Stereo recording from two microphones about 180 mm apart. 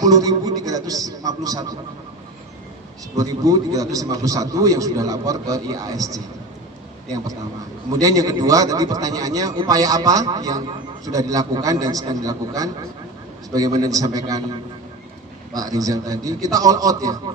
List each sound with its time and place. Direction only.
0.0 s a man's voice: 20° right (ahead or behind)
3.2 s a man's voice: 20° right (ahead or behind)
7.9 s a man's voice: 20° right (ahead or behind)
15.5 s a man's voice: 20° right (ahead or behind)